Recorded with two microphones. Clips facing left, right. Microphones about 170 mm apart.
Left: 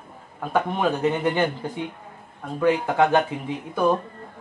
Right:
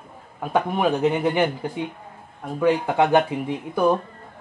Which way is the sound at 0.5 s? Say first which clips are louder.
Right 2 dB; 15° right (ahead or behind).